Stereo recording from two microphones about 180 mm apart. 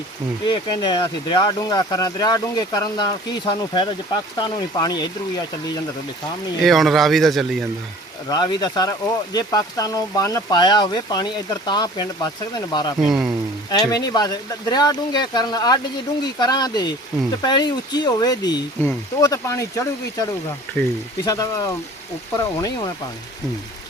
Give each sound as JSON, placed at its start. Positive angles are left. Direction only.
{"t": 0.4, "sound": "speech", "side_deg": 25}
{"t": 6.6, "sound": "a man's voice", "side_deg": 0}
{"t": 8.3, "sound": "speech", "side_deg": 25}
{"t": 13.0, "sound": "a man's voice", "side_deg": -5}
{"t": 13.7, "sound": "speech", "side_deg": 20}
{"t": 21.2, "sound": "speech", "side_deg": 20}